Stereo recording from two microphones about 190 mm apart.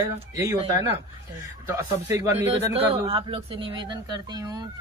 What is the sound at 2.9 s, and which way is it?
Speech, 25° right (ahead or behind).